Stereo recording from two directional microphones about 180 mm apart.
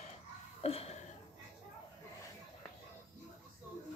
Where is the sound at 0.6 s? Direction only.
35° left (ahead or behind).